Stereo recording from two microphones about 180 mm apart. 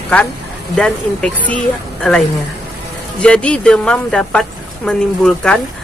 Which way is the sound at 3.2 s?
5° left (ahead or behind).